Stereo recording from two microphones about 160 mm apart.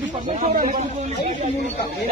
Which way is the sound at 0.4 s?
50° right (ahead or behind).